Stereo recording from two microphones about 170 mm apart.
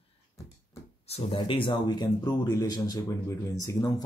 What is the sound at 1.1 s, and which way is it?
Speech, 35° left (ahead or behind).